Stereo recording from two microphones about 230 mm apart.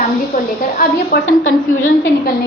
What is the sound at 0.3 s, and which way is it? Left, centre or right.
A woman's voice, left.